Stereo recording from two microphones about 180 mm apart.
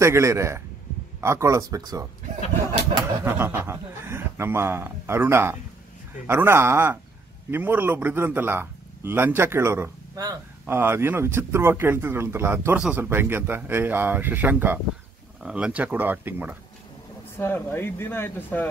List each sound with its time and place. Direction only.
0.0 s a man's voice: 15° right (ahead or behind)
17.4 s speech: 10° left (ahead or behind)